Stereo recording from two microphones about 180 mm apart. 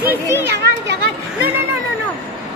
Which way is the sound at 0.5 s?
70° right (ahead or behind).